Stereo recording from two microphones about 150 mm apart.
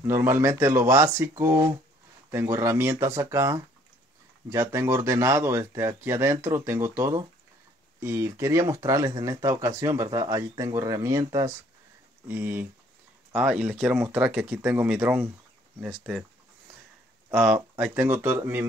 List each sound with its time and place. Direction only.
0.0 s speech: 15° right (ahead or behind)
15.9 s speech: centre (ahead or behind)
17.3 s speech: 5° right (ahead or behind)